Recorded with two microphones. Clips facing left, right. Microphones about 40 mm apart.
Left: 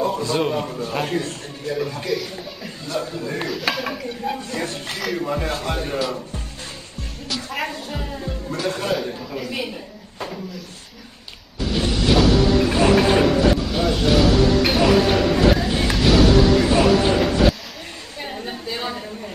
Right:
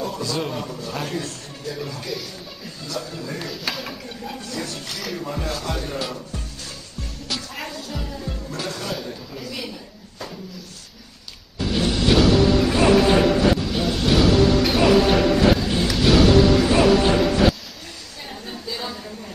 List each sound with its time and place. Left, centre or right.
0.0 s a man's voice: left
2.1 s speech: centre
2.8 s speech: left
3.4 s speech: centre
4.3 s speech: left
5.1 s speech: left
5.5 s speech: left
7.2 s music: centre
7.6 s speech: left
11.7 s music: centre
16.0 s a sound: centre
18.4 s a sound: left